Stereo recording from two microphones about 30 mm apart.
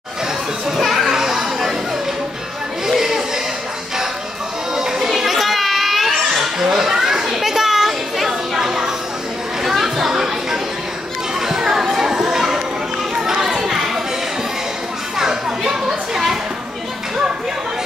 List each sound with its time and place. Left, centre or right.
0.7 s children playing: centre
2.9 s chatter: centre
4.7 s music: centre
5.0 s children playing: centre
6.6 s children playing: centre
8.5 s a sound: centre
9.6 s chatter: centre
11.4 s children playing: centre
15.1 s children playing: right